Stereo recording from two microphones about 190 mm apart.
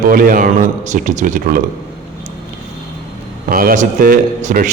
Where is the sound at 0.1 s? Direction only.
50° right (ahead or behind).